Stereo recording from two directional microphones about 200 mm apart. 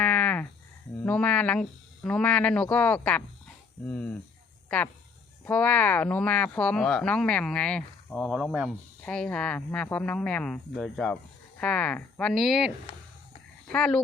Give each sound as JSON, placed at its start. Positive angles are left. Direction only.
{"t": 0.0, "sound": "a sound", "side_deg": 5}
{"t": 1.0, "sound": "speech", "side_deg": 5}
{"t": 5.5, "sound": "speech", "side_deg": 5}